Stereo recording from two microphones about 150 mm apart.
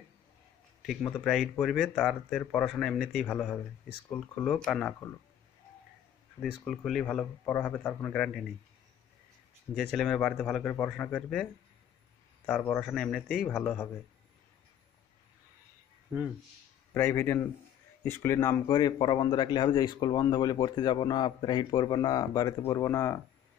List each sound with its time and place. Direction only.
0.8 s speech: 5° left (ahead or behind)
6.4 s speech: centre (ahead or behind)
9.8 s speech: 5° left (ahead or behind)
12.4 s speech: 5° left (ahead or behind)
16.1 s speech: 5° right (ahead or behind)
16.9 s speech: 15° left (ahead or behind)